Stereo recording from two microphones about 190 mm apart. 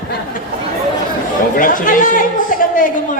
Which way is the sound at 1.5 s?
45° left (ahead or behind).